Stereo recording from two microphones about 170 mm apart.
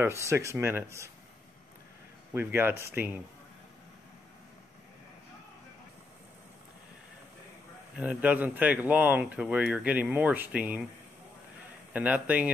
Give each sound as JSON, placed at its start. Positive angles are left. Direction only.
{"t": 0.0, "sound": "speech", "side_deg": -15}
{"t": 2.3, "sound": "speech", "side_deg": -15}
{"t": 8.0, "sound": "speech", "side_deg": -10}
{"t": 11.9, "sound": "speech", "side_deg": -10}